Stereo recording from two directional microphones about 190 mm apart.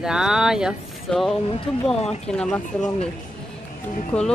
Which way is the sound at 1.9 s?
30° left (ahead or behind).